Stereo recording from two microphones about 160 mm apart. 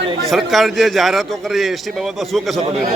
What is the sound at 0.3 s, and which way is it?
A man's voice, centre (ahead or behind).